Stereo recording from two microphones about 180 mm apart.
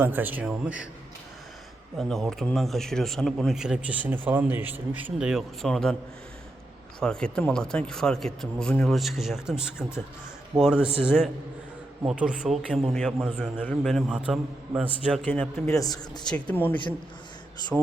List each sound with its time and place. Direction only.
0.0 s a man's voice: 10° right (ahead or behind)
2.0 s speech: centre (ahead or behind)
7.0 s speech: 5° left (ahead or behind)
15.1 s a man's voice: 10° left (ahead or behind)
15.8 s speech: 20° left (ahead or behind)
16.2 s a man's voice: 5° left (ahead or behind)
17.7 s speech: 5° right (ahead or behind)